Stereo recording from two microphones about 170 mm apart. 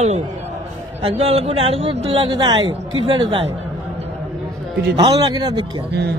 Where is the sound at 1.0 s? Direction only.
35° right (ahead or behind).